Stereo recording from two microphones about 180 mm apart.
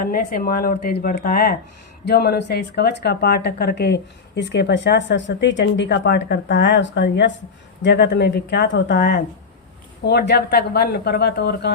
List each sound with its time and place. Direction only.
0.0 s speech: 50° left (ahead or behind); by 11.7 s 65° left (ahead or behind)